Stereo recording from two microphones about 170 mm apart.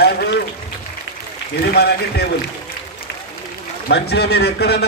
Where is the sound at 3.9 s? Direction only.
75° left (ahead or behind).